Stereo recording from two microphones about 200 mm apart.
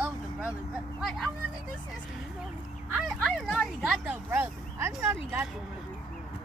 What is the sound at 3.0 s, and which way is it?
Speech, centre (ahead or behind).